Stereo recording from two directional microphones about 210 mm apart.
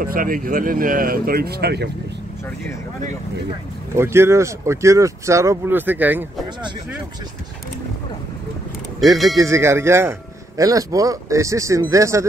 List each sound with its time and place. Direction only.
0.0 s speech: 40° right (ahead or behind)
3.9 s speech: 10° right (ahead or behind)
9.4 s speech: 15° right (ahead or behind)